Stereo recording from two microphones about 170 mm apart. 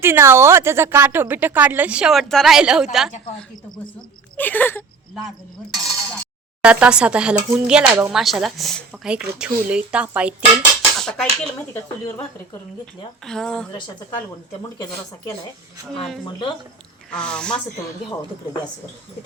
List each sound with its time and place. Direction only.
0.0 s a woman's voice: 15° right (ahead or behind)
4.4 s whimper: 10° left (ahead or behind)
5.7 s a woman's voice: centre (ahead or behind)
11.0 s speech: 5° left (ahead or behind)
13.2 s speech: 5° left (ahead or behind)
16.0 s speech: centre (ahead or behind)
16.2 s speech: 25° left (ahead or behind)
17.1 s speech: 5° left (ahead or behind)